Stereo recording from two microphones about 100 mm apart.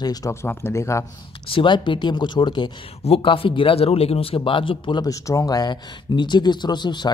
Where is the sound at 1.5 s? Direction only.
55° left (ahead or behind).